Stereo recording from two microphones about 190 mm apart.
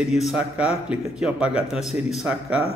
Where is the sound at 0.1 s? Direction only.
Centre (ahead or behind).